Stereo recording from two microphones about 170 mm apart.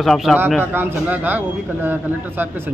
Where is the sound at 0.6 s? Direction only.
10° right (ahead or behind).